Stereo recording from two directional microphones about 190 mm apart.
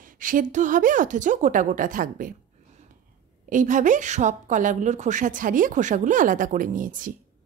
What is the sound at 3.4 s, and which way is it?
A woman's voice, 45° right (ahead or behind).